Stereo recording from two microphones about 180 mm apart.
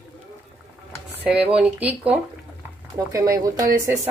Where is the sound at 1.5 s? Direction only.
10° right (ahead or behind).